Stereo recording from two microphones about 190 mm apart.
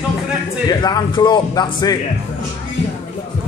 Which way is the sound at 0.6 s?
20° left (ahead or behind).